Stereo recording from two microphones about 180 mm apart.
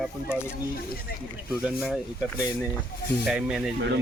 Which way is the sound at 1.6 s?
5° right (ahead or behind).